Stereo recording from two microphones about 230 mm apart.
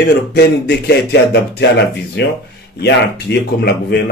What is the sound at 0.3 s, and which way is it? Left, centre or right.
A man's voice, left.